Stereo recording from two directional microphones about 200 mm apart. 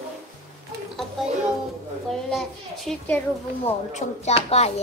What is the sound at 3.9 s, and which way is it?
Speech, 35° left (ahead or behind).